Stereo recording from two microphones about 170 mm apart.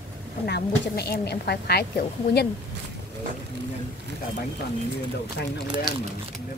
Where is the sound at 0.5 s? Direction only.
70° left (ahead or behind).